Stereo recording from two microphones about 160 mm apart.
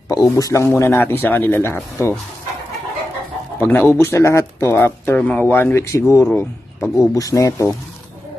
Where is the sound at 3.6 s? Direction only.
15° left (ahead or behind).